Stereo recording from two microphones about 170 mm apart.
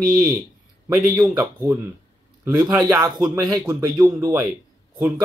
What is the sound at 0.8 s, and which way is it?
Speech, 15° right (ahead or behind).